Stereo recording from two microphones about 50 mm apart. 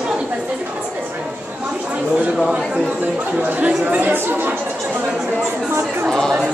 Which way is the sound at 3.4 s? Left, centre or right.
Right.